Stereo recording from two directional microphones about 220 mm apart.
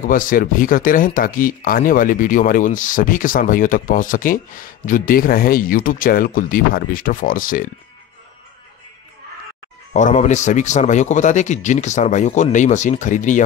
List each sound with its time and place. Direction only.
0.0 s speech: 35° left (ahead or behind)
9.9 s speech: 35° left (ahead or behind)